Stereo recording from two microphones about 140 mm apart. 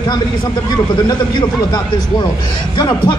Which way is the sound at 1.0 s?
30° left (ahead or behind).